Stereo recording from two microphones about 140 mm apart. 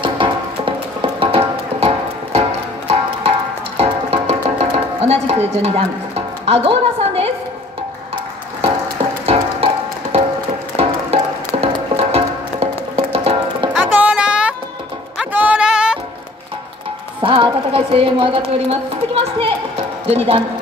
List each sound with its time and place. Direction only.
0.0 s music: 40° right (ahead or behind)
9.2 s music: 45° right (ahead or behind)
10.7 s music: 20° left (ahead or behind)
11.6 s music: 45° right (ahead or behind)
13.7 s music: 10° right (ahead or behind)
17.2 s a woman's voice: 40° right (ahead or behind)